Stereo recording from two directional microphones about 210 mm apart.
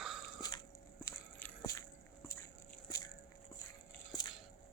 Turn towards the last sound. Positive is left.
turn(degrees=20)  # may be behind; listen again after turning